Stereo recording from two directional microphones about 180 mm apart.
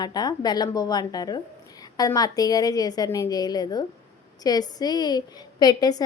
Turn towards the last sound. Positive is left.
turn(degrees=20)  # may be behind; listen again after turning